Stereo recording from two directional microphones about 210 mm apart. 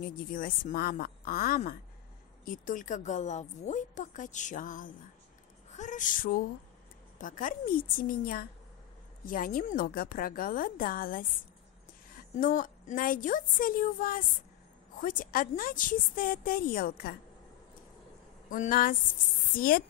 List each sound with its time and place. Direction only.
0.0 s a woman's voice: 40° left (ahead or behind)
12.4 s a woman's voice: 40° left (ahead or behind)
18.5 s a woman's voice: 40° left (ahead or behind)